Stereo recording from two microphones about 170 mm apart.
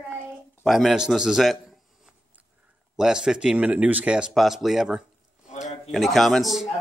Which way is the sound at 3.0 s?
5° right (ahead or behind).